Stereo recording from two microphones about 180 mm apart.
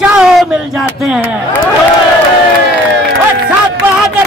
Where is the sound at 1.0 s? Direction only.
5° right (ahead or behind).